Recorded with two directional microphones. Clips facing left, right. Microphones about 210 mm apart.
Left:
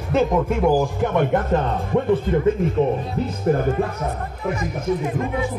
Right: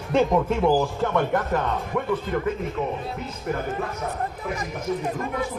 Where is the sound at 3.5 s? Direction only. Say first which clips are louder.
Left 8 dB; 40° left (ahead or behind).